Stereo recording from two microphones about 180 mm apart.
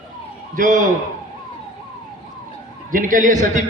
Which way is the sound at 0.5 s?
45° right (ahead or behind).